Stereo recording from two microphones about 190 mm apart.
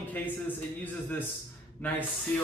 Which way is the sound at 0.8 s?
10° left (ahead or behind).